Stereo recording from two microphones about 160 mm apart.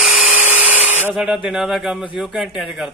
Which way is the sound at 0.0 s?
Centre (ahead or behind).